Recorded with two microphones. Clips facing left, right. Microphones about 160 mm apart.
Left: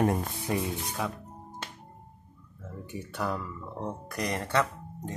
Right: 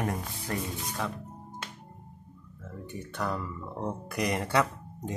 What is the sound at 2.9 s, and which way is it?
Speech, 5° left (ahead or behind).